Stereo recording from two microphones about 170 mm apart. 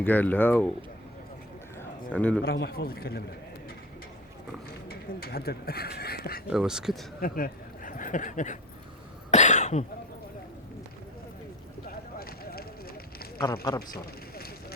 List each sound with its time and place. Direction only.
0.0 s speech: 10° left (ahead or behind)
2.1 s speech: 5° left (ahead or behind)
2.4 s speech: 70° left (ahead or behind)
4.9 s speech: 65° left (ahead or behind)
6.5 s speech: 5° right (ahead or behind)
7.2 s speech: 55° left (ahead or behind)
9.3 s cough: 45° left (ahead or behind)
12.2 s run: 60° left (ahead or behind)
13.9 s a sound: 65° left (ahead or behind)